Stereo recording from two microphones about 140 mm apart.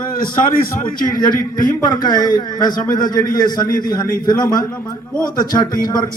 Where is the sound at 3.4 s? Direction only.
30° left (ahead or behind).